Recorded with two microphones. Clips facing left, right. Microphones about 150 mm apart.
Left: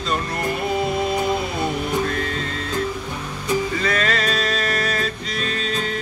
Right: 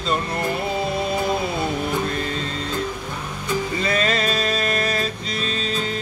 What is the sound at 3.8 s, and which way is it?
Music, 20° right (ahead or behind).